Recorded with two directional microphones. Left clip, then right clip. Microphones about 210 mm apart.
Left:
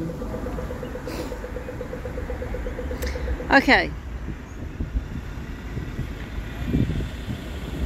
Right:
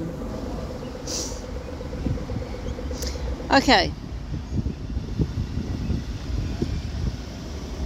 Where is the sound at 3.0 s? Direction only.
5° left (ahead or behind).